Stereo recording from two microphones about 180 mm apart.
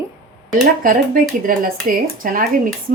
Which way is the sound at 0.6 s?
50° right (ahead or behind).